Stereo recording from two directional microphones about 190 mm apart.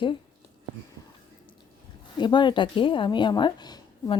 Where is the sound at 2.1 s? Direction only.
25° left (ahead or behind).